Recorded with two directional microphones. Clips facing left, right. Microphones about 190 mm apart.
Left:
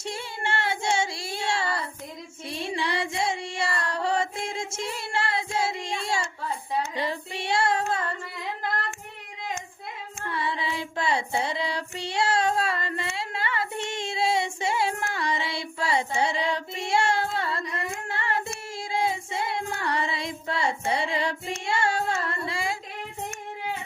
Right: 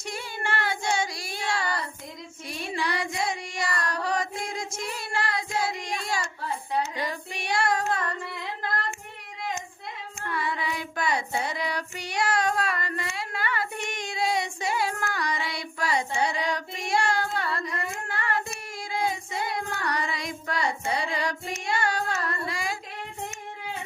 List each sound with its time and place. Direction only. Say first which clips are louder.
0.0 s child singing: left 1 dB; 25° left (ahead or behind)
2.5 s music: left 1 dB; 25° left (ahead or behind)
6.9 s singing: left 2 dB; 25° left (ahead or behind)
10.2 s child singing: even; 25° left (ahead or behind)
21.6 s music: left 2 dB; 25° left (ahead or behind)